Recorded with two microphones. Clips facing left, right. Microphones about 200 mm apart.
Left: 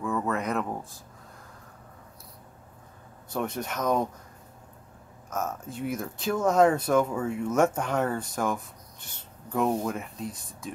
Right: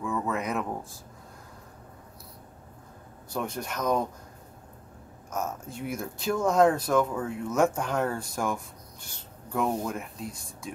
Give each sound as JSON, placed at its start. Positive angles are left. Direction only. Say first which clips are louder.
{"t": 0.0, "sound": "a sound", "louder": "left 1 dB", "side_deg": 0}
{"t": 3.3, "sound": "speech", "louder": "left 2 dB", "side_deg": 0}
{"t": 5.3, "sound": "speech", "louder": "left 1 dB", "side_deg": 0}